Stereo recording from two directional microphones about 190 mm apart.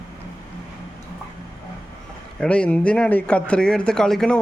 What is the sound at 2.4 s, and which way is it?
Speech, 5° left (ahead or behind).